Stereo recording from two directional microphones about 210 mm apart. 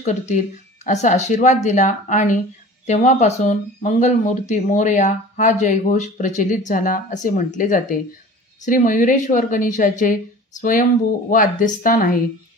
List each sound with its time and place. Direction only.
0.0 s speech: 35° left (ahead or behind)